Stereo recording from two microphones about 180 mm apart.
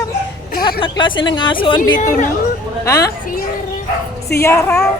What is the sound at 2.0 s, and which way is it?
Speech, 45° left (ahead or behind).